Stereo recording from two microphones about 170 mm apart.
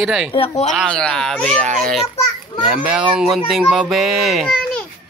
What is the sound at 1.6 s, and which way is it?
Speech, 50° right (ahead or behind).